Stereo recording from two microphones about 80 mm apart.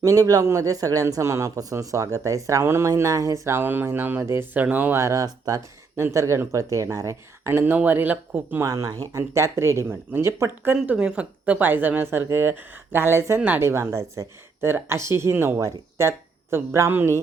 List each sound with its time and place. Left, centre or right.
0.0 s speech: right
1.1 s speech: right
2.9 s speech: right
4.5 s speech: centre
4.9 s speech: right
5.2 s speech: right
6.0 s speech: right
7.5 s speech: right
8.6 s speech: right
10.9 s speech: centre; by 17.2 s right